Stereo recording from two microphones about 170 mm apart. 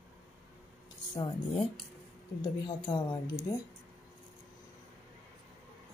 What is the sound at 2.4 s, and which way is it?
Speech, 25° left (ahead or behind).